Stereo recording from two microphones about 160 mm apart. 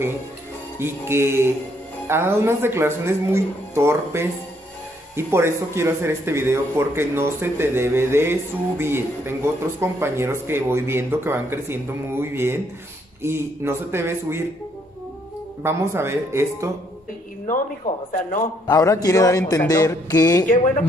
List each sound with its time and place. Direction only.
0.7 s speech: 15° right (ahead or behind)
15.6 s speech: 15° right (ahead or behind)
18.1 s a man's voice: 55° left (ahead or behind)
18.7 s a sound: 20° left (ahead or behind)